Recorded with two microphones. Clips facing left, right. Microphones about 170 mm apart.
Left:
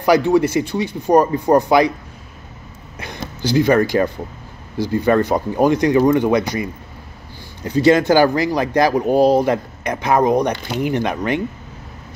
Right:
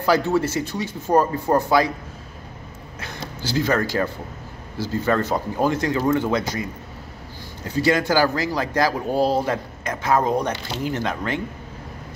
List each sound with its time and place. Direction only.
0.0 s speech: 15° left (ahead or behind)
3.4 s speech: 15° left (ahead or behind)
7.6 s speech: 20° left (ahead or behind)
10.5 s speech: 55° left (ahead or behind)
10.9 s speech: 15° left (ahead or behind)